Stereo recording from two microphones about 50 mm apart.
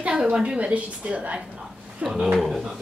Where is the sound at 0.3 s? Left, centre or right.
Right.